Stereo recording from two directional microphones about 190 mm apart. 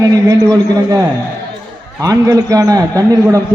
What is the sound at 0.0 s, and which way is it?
A man's voice, 15° right (ahead or behind).